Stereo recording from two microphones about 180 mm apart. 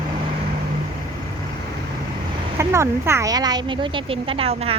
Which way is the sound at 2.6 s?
15° right (ahead or behind).